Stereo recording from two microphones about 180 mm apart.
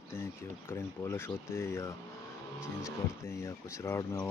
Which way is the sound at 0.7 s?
10° left (ahead or behind).